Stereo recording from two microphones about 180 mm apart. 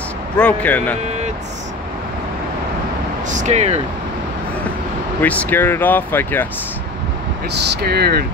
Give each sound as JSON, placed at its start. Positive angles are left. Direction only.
{"t": 0.4, "sound": "speech", "side_deg": 10}
{"t": 3.3, "sound": "speech", "side_deg": -40}
{"t": 5.2, "sound": "speech", "side_deg": 10}
{"t": 7.8, "sound": "speech", "side_deg": -60}